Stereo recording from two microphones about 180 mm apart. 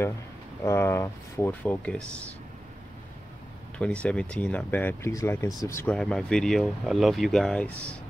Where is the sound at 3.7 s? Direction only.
5° left (ahead or behind).